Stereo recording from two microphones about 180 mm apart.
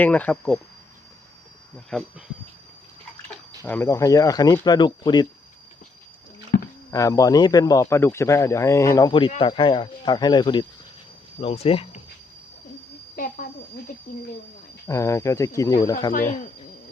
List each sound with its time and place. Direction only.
0.0 s speech: 10° left (ahead or behind)
1.9 s speech: centre (ahead or behind)
3.6 s speech: 15° left (ahead or behind)
6.9 s speech: 20° left (ahead or behind); by 11.9 s 35° left (ahead or behind)
13.1 s speech: 50° left (ahead or behind)
14.8 s speech: 15° left (ahead or behind)